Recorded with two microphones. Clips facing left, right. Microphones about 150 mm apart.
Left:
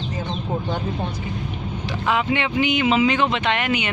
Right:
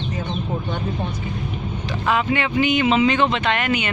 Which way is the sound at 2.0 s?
15° left (ahead or behind).